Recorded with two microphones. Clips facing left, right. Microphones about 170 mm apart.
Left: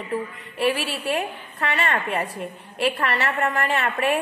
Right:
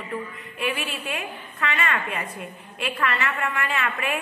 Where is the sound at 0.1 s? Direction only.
35° left (ahead or behind).